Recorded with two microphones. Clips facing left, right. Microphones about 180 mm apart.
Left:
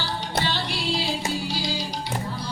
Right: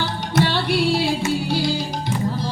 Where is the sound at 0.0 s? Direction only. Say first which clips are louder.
Right 7 dB; 60° right (ahead or behind).